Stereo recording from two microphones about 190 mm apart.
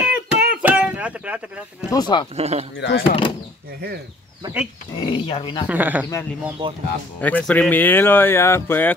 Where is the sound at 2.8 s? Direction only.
60° left (ahead or behind).